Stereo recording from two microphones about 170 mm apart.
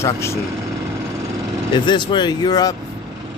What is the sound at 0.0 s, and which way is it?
Speech, 15° left (ahead or behind).